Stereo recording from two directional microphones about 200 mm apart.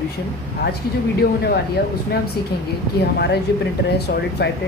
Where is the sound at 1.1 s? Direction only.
50° left (ahead or behind).